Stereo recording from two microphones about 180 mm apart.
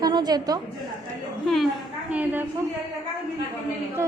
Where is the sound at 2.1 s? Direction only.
10° right (ahead or behind).